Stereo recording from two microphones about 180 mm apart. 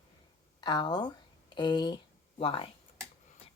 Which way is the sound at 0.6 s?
25° left (ahead or behind).